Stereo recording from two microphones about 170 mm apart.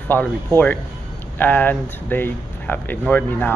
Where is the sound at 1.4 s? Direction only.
10° left (ahead or behind).